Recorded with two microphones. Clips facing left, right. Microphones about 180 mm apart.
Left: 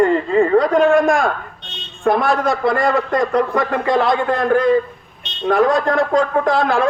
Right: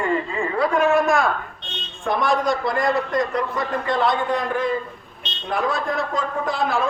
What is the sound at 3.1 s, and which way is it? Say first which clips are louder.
Speech: left 6 dB; 90° left.